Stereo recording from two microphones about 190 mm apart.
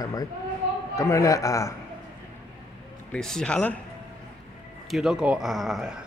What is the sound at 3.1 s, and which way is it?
Speech, 5° left (ahead or behind).